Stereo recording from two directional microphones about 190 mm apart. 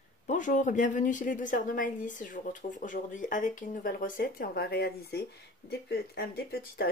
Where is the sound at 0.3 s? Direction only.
40° left (ahead or behind).